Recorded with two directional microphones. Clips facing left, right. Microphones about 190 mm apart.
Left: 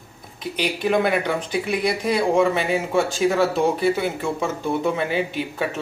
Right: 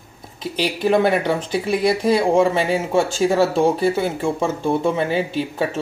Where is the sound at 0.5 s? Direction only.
30° right (ahead or behind).